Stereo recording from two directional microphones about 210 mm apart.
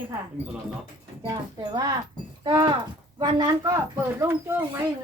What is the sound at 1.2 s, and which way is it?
Speech, 15° right (ahead or behind).